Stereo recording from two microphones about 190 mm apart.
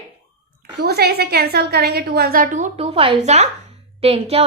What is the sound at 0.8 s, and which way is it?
A woman's voice, 55° right (ahead or behind).